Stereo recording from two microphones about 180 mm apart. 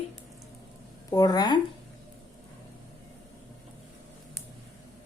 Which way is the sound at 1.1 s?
20° left (ahead or behind).